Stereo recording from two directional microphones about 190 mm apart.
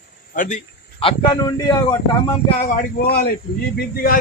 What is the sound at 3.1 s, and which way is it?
Speech, 55° left (ahead or behind).